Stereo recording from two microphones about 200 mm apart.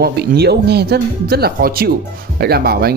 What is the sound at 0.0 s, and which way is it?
Speech, 50° right (ahead or behind).